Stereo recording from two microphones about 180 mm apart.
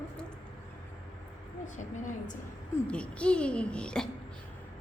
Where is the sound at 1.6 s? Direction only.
45° left (ahead or behind).